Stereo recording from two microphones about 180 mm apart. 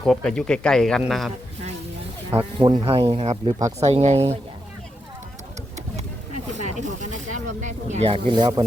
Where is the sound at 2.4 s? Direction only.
25° right (ahead or behind).